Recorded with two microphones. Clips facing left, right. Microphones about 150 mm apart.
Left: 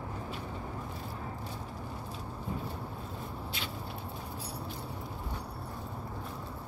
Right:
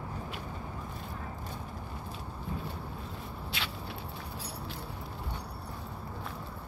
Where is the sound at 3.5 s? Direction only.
75° right (ahead or behind).